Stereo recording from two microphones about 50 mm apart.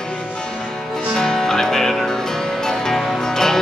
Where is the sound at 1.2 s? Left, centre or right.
Centre.